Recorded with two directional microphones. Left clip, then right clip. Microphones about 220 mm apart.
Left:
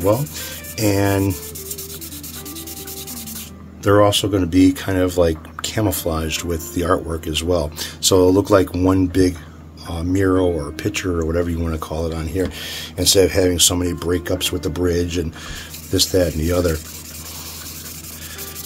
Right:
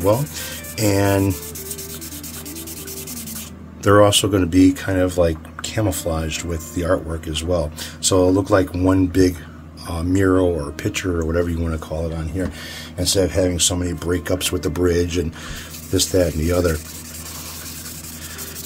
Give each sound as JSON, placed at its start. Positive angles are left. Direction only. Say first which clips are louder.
{"t": 0.0, "sound": "speech", "louder": "even", "side_deg": 0}
{"t": 3.8, "sound": "speech", "louder": "right 1 dB", "side_deg": -10}
{"t": 4.5, "sound": "speech", "louder": "even", "side_deg": 10}
{"t": 9.1, "sound": "speech", "louder": "even", "side_deg": 0}
{"t": 11.9, "sound": "speech", "louder": "left 2 dB", "side_deg": 35}
{"t": 13.9, "sound": "speech", "louder": "left 2 dB", "side_deg": 10}
{"t": 14.2, "sound": "speech", "louder": "even", "side_deg": 0}